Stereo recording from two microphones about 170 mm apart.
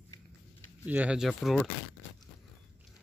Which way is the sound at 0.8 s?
10° right (ahead or behind).